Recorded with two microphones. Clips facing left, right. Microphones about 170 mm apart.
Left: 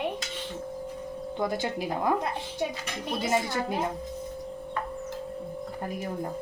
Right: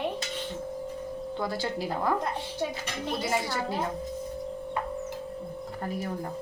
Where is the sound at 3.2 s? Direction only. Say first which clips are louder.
Left 4 dB; 20° left (ahead or behind).